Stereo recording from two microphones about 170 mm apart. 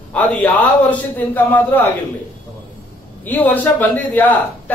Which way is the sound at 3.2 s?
10° left (ahead or behind).